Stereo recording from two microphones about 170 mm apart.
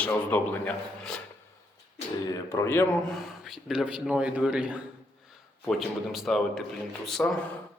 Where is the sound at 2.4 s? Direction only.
15° left (ahead or behind).